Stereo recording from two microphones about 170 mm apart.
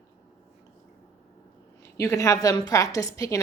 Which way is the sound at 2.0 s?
15° left (ahead or behind).